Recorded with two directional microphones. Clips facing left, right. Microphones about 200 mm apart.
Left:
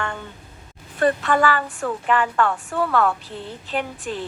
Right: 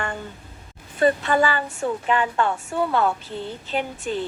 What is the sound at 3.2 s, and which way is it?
Speech, centre (ahead or behind).